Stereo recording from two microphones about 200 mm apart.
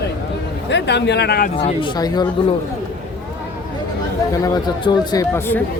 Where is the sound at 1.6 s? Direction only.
25° left (ahead or behind).